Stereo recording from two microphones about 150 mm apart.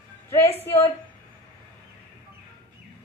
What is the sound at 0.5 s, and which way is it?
Speech, 15° left (ahead or behind).